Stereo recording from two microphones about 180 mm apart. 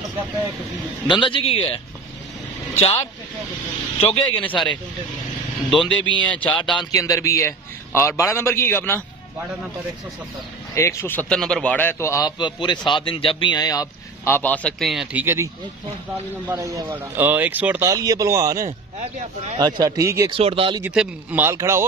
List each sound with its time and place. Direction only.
1.2 s speech: 30° left (ahead or behind)
4.3 s a man's voice: 10° left (ahead or behind)
6.6 s a man's voice: 25° left (ahead or behind)
10.7 s a man's voice: 15° left (ahead or behind); by 18.7 s 15° right (ahead or behind)
18.7 s speech: 40° right (ahead or behind)
19.6 s speech: 20° right (ahead or behind)
20.2 s speech: 30° right (ahead or behind)
20.8 s speech: 5° right (ahead or behind)